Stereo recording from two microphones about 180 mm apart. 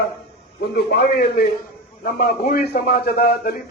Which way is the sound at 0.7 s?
65° left (ahead or behind).